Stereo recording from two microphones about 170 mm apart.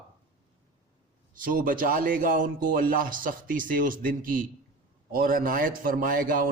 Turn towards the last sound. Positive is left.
turn(degrees=-55)  # may be behind; listen again after turning